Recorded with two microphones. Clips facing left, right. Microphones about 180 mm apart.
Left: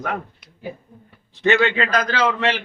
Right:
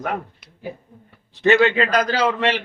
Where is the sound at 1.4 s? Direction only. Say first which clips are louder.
Right 2 dB; 35° right (ahead or behind).